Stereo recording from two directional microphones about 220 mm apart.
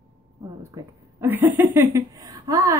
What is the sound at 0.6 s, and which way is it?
Speech, 10° right (ahead or behind).